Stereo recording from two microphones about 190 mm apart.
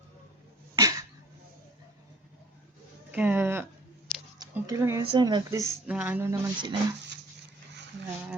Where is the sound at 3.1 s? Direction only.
10° right (ahead or behind).